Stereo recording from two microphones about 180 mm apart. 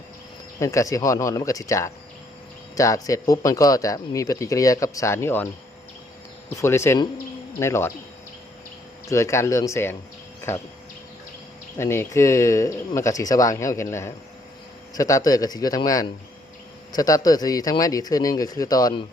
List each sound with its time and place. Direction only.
0.6 s speech: 15° left (ahead or behind)
6.6 s speech: 15° left (ahead or behind)
9.0 s speech: 15° left (ahead or behind)
11.8 s speech: 15° left (ahead or behind)